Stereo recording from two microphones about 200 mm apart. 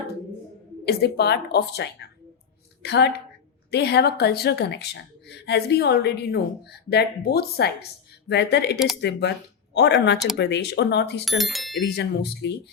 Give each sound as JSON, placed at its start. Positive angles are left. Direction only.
{"t": 0.9, "sound": "speech", "side_deg": 55}
{"t": 11.3, "sound": "speech", "side_deg": 0}
{"t": 11.8, "sound": "speech", "side_deg": 60}